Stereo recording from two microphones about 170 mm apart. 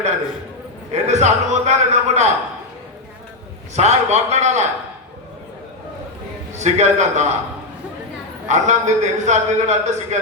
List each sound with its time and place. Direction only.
0.9 s a man's voice: 40° right (ahead or behind)
3.8 s a man's voice: 40° right (ahead or behind)
6.5 s a man's voice: 40° right (ahead or behind)
8.4 s a man's voice: 45° right (ahead or behind)